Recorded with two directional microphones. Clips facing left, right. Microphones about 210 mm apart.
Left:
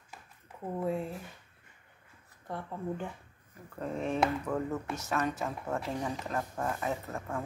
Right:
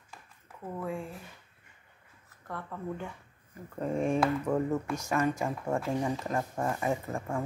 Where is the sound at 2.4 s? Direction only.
25° left (ahead or behind).